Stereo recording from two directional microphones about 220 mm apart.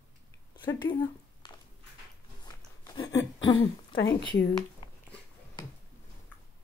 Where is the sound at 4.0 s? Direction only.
55° left (ahead or behind).